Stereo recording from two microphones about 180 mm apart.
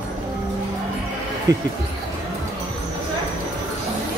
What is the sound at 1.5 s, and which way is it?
Speech, 20° right (ahead or behind).